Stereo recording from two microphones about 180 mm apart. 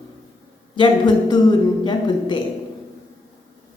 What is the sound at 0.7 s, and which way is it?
A woman's voice, 25° left (ahead or behind).